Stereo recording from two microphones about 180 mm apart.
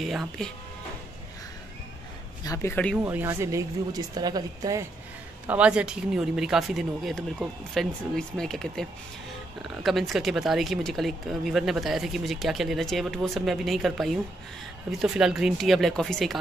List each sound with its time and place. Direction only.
0.0 s speech: centre (ahead or behind)
2.4 s speech: 15° left (ahead or behind)
3.0 s speech: 10° right (ahead or behind)
5.5 s speech: 5° right (ahead or behind)